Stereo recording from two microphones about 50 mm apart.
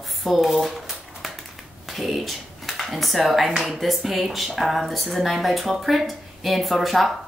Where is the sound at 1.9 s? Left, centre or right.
Centre.